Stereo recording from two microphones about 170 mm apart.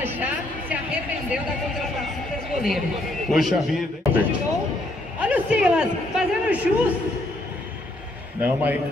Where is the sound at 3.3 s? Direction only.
Centre (ahead or behind).